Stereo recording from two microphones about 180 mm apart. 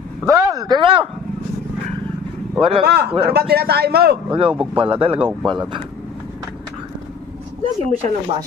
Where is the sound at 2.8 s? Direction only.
60° right (ahead or behind).